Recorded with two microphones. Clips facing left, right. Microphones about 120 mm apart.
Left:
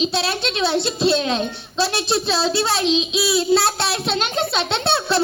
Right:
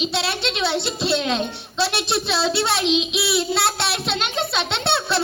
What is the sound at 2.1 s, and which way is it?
Baby laughter, 25° left (ahead or behind).